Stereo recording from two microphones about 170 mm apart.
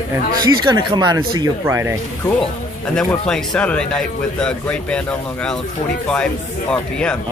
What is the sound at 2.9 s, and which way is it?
Speech, 5° left (ahead or behind).